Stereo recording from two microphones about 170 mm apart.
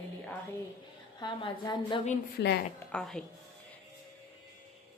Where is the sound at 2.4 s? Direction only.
85° left.